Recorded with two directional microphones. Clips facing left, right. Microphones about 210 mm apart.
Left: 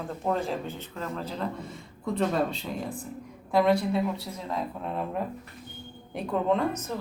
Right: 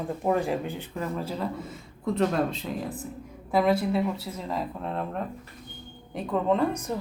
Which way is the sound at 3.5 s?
5° right (ahead or behind).